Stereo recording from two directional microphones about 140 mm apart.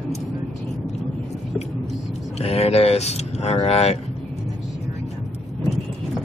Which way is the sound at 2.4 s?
45° left (ahead or behind).